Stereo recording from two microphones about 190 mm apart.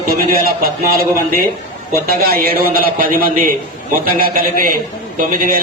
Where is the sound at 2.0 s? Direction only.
50° right (ahead or behind).